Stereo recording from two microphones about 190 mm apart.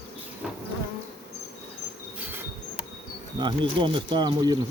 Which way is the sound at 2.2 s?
10° right (ahead or behind).